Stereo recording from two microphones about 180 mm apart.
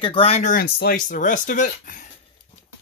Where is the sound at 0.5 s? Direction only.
55° left (ahead or behind).